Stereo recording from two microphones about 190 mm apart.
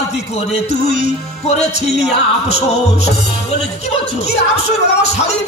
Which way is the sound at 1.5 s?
35° left (ahead or behind).